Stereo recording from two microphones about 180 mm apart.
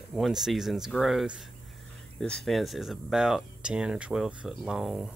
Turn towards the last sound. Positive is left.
turn(degrees=0)  # may be behind; listen again after turning